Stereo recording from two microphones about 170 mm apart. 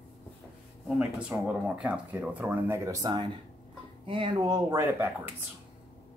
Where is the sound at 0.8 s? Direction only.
5° right (ahead or behind); by 4.8 s 25° right (ahead or behind).